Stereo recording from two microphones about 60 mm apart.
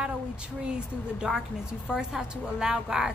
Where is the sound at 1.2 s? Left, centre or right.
Centre.